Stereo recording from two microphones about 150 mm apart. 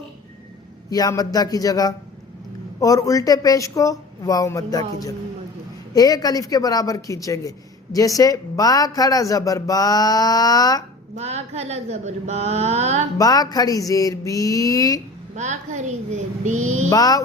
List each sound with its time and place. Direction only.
0.9 s speech: 25° left (ahead or behind)
5.9 s speech: 25° left (ahead or behind)
11.1 s mantra: 45° right (ahead or behind)
13.1 s speech: 25° left (ahead or behind)
15.4 s mantra: 50° right (ahead or behind)
16.9 s speech: 25° left (ahead or behind)